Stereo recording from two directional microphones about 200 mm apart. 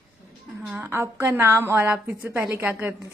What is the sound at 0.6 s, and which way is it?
A woman's voice, 5° right (ahead or behind).